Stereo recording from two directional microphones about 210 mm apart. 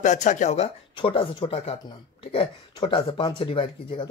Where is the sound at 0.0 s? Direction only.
35° left (ahead or behind).